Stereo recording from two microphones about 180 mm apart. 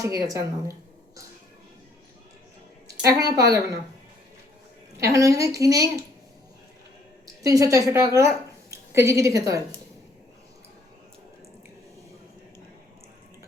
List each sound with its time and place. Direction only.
0.0 s speech: 15° right (ahead or behind)
2.8 s a woman's voice: 20° right (ahead or behind)
4.9 s a woman's voice: 15° right (ahead or behind)
7.4 s a woman's voice: 20° right (ahead or behind)